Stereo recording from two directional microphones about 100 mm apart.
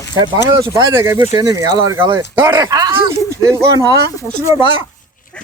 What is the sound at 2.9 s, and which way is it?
Speech, 30° right (ahead or behind).